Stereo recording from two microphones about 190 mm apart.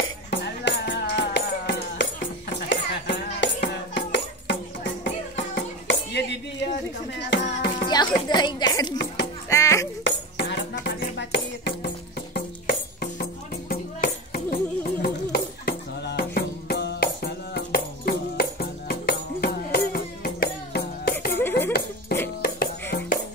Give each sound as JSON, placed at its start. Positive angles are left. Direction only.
{"t": 0.3, "sound": "music", "side_deg": 65}
{"t": 8.3, "sound": "a sound", "side_deg": 20}
{"t": 8.9, "sound": "music", "side_deg": 65}
{"t": 9.5, "sound": "music", "side_deg": 15}
{"t": 10.0, "sound": "music", "side_deg": 65}
{"t": 12.4, "sound": "music", "side_deg": 55}
{"t": 21.3, "sound": "a sound", "side_deg": 10}
{"t": 22.4, "sound": "music", "side_deg": 50}